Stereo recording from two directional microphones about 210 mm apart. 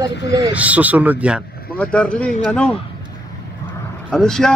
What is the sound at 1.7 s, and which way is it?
A man's voice, 5° left (ahead or behind).